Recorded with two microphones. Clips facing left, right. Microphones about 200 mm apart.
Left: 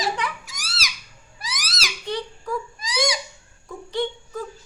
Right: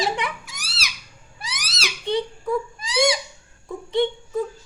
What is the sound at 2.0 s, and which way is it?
Whimper, 25° right (ahead or behind).